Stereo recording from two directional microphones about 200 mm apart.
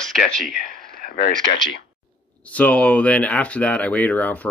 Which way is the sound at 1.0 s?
45° left (ahead or behind).